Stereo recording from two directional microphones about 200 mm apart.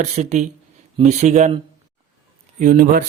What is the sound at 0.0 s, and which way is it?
A man's voice, 35° right (ahead or behind).